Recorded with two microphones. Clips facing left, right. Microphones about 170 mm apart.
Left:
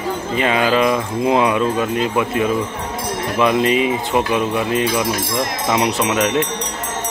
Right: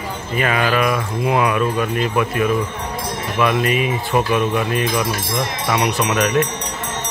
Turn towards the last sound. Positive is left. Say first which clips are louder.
# even
turn(degrees=25)  # may be behind; listen again after turning